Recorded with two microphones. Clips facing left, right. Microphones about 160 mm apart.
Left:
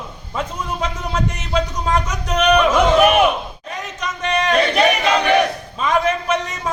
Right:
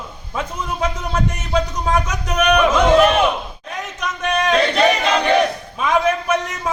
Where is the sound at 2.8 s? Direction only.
20° left (ahead or behind).